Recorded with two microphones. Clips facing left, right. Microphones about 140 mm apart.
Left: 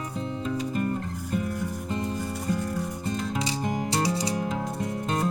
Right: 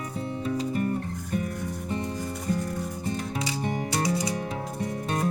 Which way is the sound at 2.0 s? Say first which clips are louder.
Left 1 dB; 30° left (ahead or behind).